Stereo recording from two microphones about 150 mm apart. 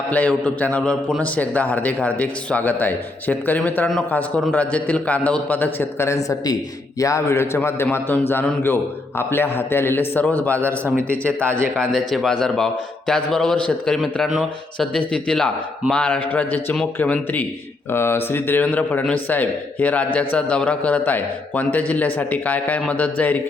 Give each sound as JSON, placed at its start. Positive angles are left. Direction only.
{"t": 0.1, "sound": "a man's voice", "side_deg": 10}
{"t": 10.6, "sound": "a man's voice", "side_deg": -15}
{"t": 11.8, "sound": "a man's voice", "side_deg": 0}